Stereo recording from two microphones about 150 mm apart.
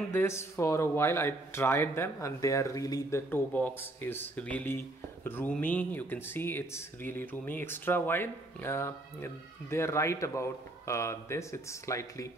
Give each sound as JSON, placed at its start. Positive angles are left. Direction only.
{"t": 0.1, "sound": "speech", "side_deg": 15}